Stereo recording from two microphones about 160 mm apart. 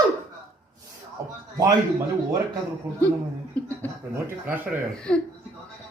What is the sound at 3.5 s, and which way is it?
Speech, 10° left (ahead or behind).